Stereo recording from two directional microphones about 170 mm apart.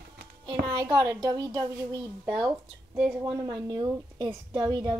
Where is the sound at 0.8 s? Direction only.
25° right (ahead or behind).